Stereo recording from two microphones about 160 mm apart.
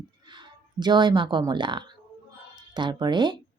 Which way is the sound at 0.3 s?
30° right (ahead or behind).